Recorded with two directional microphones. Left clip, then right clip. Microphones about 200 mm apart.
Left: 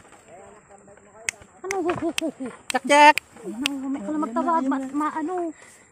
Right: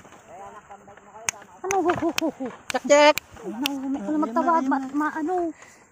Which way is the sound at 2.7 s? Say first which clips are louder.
Left 2 dB; 60° left (ahead or behind).